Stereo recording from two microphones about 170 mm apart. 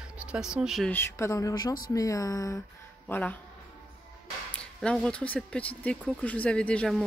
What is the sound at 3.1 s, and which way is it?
Speech, 10° left (ahead or behind).